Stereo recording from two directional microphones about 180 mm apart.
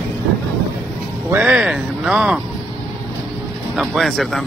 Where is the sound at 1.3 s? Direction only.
5° right (ahead or behind).